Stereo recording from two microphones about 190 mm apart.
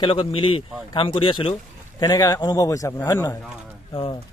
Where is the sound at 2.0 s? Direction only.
20° left (ahead or behind).